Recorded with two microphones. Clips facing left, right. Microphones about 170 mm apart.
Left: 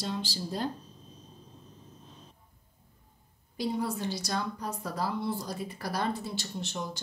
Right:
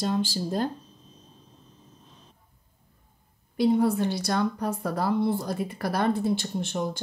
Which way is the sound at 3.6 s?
55° right (ahead or behind).